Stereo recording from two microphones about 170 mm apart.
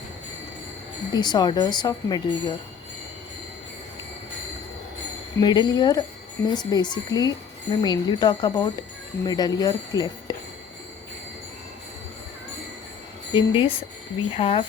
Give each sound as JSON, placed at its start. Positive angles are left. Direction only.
{"t": 1.1, "sound": "speech", "side_deg": 25}
{"t": 5.4, "sound": "speech", "side_deg": 25}
{"t": 13.3, "sound": "speech", "side_deg": 30}